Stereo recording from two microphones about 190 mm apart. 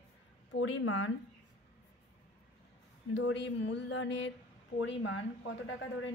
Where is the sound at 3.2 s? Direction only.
70° left (ahead or behind).